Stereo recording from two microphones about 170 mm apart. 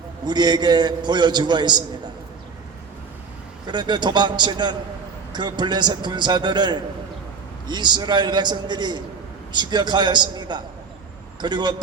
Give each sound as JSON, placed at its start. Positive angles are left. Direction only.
{"t": 0.3, "sound": "a man's voice", "side_deg": -25}
{"t": 3.7, "sound": "a man's voice", "side_deg": -25}